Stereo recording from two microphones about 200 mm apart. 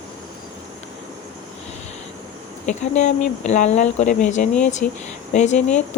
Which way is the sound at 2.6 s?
35° left (ahead or behind).